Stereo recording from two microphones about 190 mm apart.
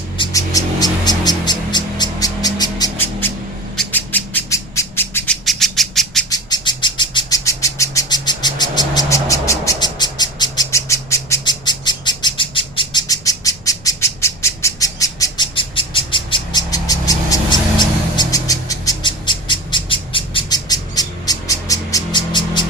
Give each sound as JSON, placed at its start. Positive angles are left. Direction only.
{"t": 0.2, "sound": "music", "side_deg": 20}
{"t": 3.8, "sound": "bird", "side_deg": 10}
{"t": 6.3, "sound": "bird", "side_deg": 20}
{"t": 18.2, "sound": "a sound", "side_deg": 20}